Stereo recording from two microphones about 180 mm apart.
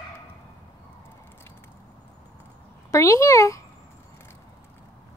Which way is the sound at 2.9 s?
15° left (ahead or behind).